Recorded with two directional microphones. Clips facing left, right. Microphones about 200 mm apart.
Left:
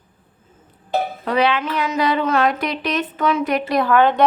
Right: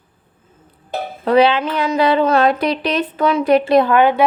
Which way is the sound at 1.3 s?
30° right (ahead or behind).